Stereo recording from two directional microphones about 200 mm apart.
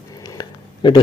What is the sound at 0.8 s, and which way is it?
Speech, 25° left (ahead or behind).